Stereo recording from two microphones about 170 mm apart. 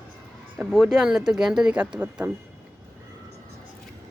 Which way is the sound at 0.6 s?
5° right (ahead or behind).